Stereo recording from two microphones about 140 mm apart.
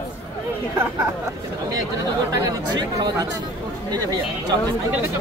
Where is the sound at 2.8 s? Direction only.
25° right (ahead or behind).